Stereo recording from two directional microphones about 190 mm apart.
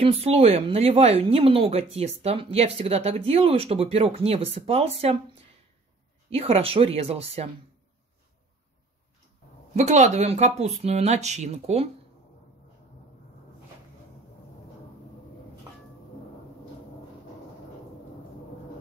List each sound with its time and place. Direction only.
0.0 s speech: 30° right (ahead or behind)
6.3 s speech: 30° right (ahead or behind)
9.8 s speech: 40° right (ahead or behind)